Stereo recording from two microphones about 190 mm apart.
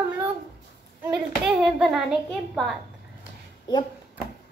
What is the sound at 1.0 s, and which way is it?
A child's voice, 5° right (ahead or behind).